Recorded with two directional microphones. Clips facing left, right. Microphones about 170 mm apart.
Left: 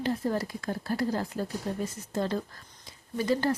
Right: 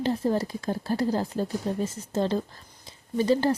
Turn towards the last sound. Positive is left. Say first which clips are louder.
# right 4 dB
turn(degrees=-25)  # may be behind; listen again after turning